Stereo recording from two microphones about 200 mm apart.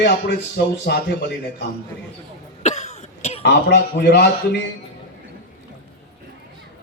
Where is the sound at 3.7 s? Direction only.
55° left (ahead or behind).